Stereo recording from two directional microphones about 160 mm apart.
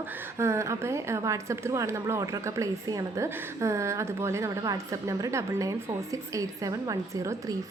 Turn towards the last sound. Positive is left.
turn(degrees=-20)  # may be behind; listen again after turning